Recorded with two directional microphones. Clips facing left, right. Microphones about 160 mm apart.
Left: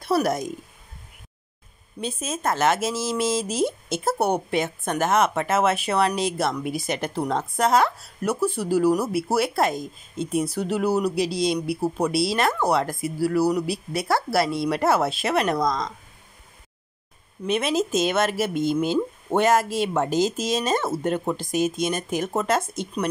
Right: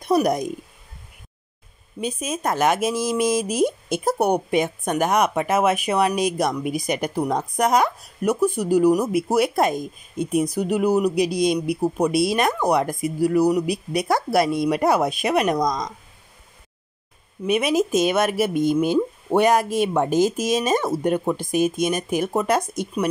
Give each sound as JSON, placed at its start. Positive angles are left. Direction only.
{"t": 0.0, "sound": "speech", "side_deg": -15}
{"t": 2.0, "sound": "speech", "side_deg": -10}
{"t": 17.5, "sound": "speech", "side_deg": -15}